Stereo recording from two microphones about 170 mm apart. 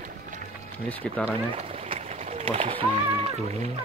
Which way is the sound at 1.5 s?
35° right (ahead or behind).